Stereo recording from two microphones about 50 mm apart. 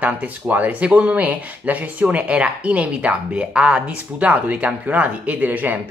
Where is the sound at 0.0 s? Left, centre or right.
Right.